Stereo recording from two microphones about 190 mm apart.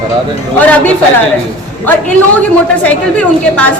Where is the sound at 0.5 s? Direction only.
10° left (ahead or behind).